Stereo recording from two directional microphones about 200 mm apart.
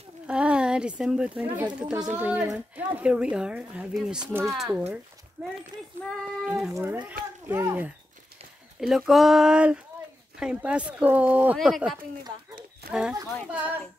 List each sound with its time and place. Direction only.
0.3 s speech: 5° right (ahead or behind)
12.8 s a sound: 50° right (ahead or behind)
13.5 s speech: 10° right (ahead or behind)